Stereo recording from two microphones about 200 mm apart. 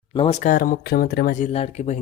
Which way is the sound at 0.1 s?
30° left (ahead or behind).